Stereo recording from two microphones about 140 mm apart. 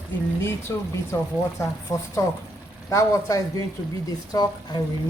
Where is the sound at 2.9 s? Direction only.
20° left (ahead or behind).